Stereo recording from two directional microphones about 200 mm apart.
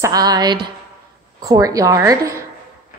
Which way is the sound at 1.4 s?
15° right (ahead or behind).